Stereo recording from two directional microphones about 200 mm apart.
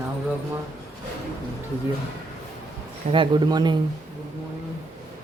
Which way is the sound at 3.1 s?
25° right (ahead or behind).